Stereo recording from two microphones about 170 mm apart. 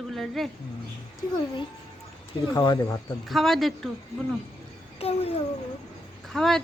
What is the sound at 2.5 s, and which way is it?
Speech, 25° left (ahead or behind).